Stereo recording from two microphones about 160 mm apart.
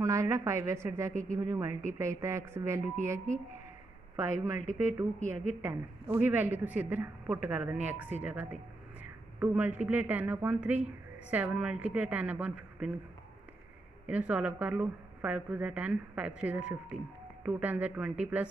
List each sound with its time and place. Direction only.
0.0 s a woman's voice: 20° right (ahead or behind)
4.2 s a woman's voice: 20° right (ahead or behind)
14.0 s a woman's voice: 10° right (ahead or behind)